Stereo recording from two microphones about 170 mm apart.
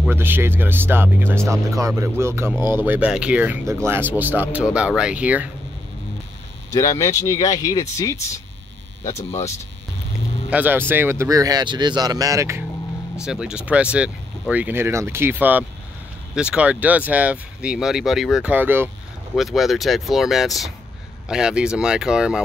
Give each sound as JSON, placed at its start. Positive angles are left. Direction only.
{"t": 0.0, "sound": "speech", "side_deg": -10}
{"t": 6.7, "sound": "speech", "side_deg": 20}
{"t": 9.0, "sound": "speech", "side_deg": 15}
{"t": 10.5, "sound": "speech", "side_deg": -10}
{"t": 13.2, "sound": "speech", "side_deg": -5}
{"t": 19.3, "sound": "speech", "side_deg": 0}